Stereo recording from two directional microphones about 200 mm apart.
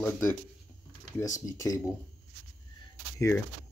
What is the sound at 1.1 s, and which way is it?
Speech, 15° left (ahead or behind).